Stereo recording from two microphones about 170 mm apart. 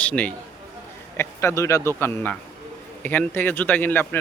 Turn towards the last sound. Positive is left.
turn(degrees=10)  # may be behind; listen again after turning